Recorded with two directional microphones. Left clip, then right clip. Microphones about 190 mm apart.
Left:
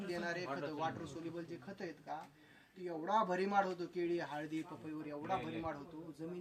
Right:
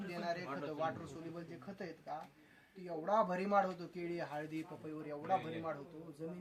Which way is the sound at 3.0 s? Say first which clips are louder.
Right 1 dB; 10° right (ahead or behind).